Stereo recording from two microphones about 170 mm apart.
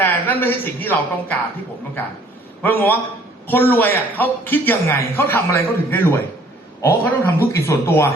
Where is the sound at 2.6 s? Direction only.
10° left (ahead or behind).